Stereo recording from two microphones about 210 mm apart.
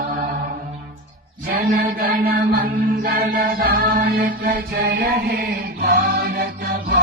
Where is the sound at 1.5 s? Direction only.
45° right (ahead or behind).